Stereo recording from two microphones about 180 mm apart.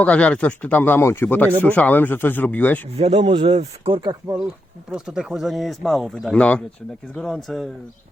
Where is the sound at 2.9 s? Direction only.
35° right (ahead or behind).